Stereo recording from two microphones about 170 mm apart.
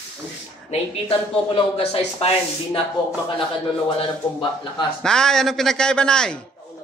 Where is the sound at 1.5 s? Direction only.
35° left (ahead or behind).